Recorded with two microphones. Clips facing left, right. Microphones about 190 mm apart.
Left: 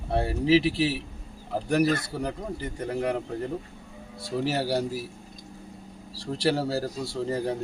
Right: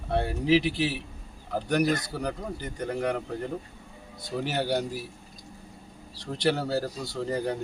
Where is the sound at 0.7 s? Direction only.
30° left (ahead or behind).